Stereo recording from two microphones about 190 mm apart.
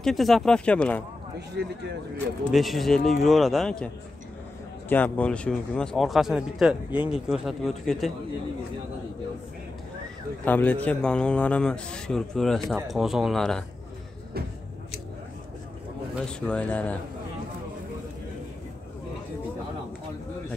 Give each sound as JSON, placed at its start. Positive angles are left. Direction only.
{"t": 0.0, "sound": "a man's voice", "side_deg": 0}
{"t": 1.5, "sound": "speech", "side_deg": -65}
{"t": 2.5, "sound": "a man's voice", "side_deg": 0}
{"t": 10.4, "sound": "a man's voice", "side_deg": 10}
{"t": 16.2, "sound": "a man's voice", "side_deg": 5}